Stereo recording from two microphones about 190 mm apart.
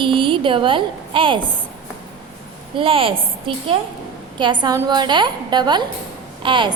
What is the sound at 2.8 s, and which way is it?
Speech, 30° right (ahead or behind).